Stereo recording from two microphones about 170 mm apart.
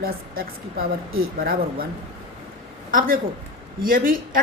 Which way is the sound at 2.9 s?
55° right (ahead or behind).